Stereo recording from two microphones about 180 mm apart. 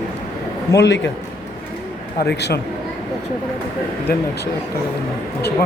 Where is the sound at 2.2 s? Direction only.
65° left (ahead or behind).